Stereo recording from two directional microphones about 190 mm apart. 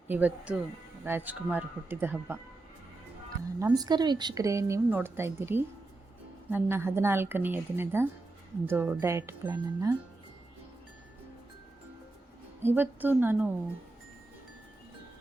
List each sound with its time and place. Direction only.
0.1 s a woman's voice: 10° right (ahead or behind)
3.6 s a woman's voice: 15° right (ahead or behind)
12.6 s a woman's voice: 10° right (ahead or behind)